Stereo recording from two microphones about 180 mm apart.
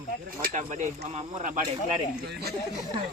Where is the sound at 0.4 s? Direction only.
40° right (ahead or behind).